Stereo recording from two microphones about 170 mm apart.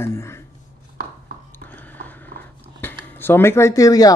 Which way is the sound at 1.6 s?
10° left (ahead or behind).